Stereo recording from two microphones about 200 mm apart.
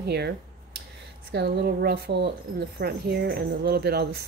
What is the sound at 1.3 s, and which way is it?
A woman's voice, 55° right (ahead or behind).